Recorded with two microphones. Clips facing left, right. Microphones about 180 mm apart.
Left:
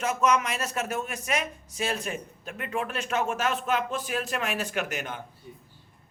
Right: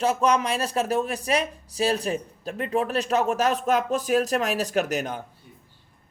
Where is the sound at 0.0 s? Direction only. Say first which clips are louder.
Right 3 dB; 35° right (ahead or behind).